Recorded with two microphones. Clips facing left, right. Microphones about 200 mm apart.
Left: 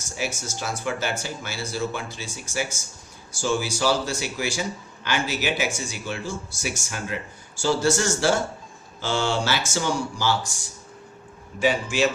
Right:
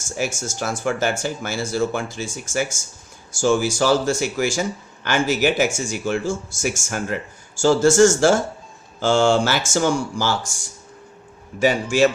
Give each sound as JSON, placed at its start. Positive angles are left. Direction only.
{"t": 0.2, "sound": "speech", "side_deg": -45}
{"t": 11.6, "sound": "speech", "side_deg": -45}